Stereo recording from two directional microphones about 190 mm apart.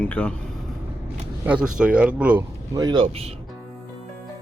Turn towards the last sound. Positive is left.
turn(degrees=-30)  # may be behind; listen again after turning